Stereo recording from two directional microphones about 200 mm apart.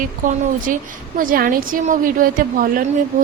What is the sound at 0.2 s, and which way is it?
A woman's voice, 40° right (ahead or behind).